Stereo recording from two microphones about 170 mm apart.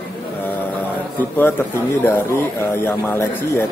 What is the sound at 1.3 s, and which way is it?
Speech, 10° left (ahead or behind).